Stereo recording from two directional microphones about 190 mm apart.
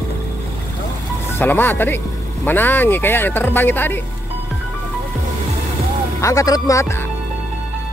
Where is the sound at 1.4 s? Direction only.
10° left (ahead or behind).